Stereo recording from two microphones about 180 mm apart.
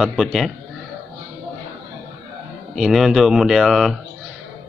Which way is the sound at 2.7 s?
Centre (ahead or behind).